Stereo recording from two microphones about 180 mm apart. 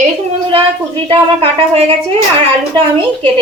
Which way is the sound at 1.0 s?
30° right (ahead or behind).